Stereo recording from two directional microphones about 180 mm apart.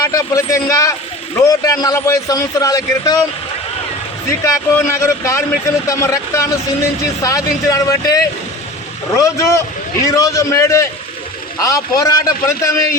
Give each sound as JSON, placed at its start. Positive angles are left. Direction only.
{"t": 0.0, "sound": "a man's voice", "side_deg": 20}
{"t": 4.3, "sound": "a man's voice", "side_deg": 15}